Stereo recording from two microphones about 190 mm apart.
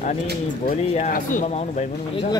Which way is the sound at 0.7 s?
45° left (ahead or behind).